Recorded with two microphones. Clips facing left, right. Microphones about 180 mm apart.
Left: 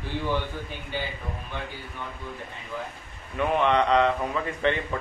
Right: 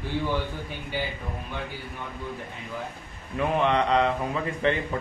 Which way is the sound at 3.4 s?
35° right (ahead or behind).